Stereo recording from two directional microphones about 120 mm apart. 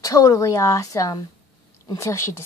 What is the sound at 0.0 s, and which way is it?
A woman's voice, 30° left (ahead or behind).